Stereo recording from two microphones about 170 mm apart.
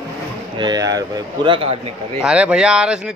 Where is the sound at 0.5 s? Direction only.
25° right (ahead or behind).